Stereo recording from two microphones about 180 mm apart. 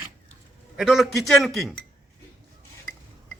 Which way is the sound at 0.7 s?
Centre (ahead or behind).